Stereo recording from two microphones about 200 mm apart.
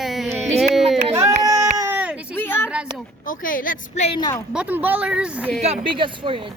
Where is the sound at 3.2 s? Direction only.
45° left (ahead or behind).